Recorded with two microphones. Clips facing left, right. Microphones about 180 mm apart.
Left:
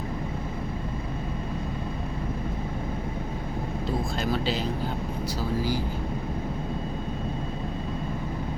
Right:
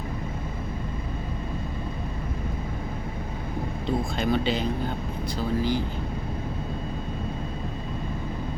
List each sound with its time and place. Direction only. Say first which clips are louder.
3.8 s speech: right 3 dB; centre (ahead or behind)